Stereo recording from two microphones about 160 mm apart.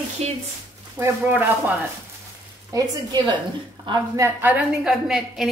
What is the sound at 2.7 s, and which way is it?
Speech, 25° right (ahead or behind).